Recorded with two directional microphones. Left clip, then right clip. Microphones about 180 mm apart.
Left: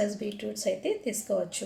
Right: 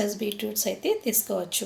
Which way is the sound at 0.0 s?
25° right (ahead or behind).